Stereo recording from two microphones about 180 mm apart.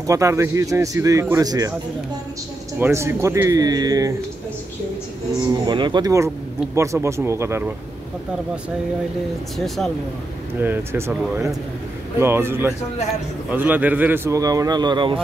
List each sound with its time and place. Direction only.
0.0 s speech: 15° right (ahead or behind)
2.8 s speech: 15° right (ahead or behind)
5.7 s speech: 25° right (ahead or behind)
10.6 s speech: 15° right (ahead or behind)
12.2 s speech: 10° right (ahead or behind)